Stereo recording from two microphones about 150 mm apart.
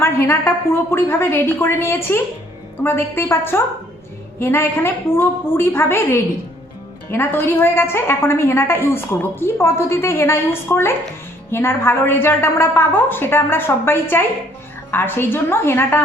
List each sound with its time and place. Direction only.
0.0 s a woman's voice: 15° left (ahead or behind)